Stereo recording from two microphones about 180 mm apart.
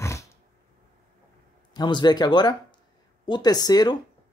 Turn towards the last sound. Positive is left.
turn(degrees=20)  # may be behind; listen again after turning